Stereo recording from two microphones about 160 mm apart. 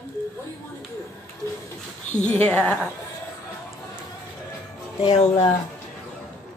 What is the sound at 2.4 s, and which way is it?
Child singing, 10° left (ahead or behind).